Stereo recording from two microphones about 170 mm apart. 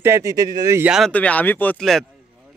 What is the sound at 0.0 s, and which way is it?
Speech, 15° right (ahead or behind).